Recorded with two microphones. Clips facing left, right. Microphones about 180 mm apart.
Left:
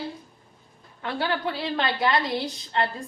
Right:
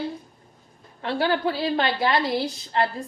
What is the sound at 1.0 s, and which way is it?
A woman's voice, 30° right (ahead or behind).